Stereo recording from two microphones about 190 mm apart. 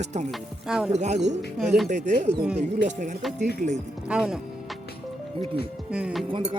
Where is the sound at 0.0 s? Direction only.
35° right (ahead or behind).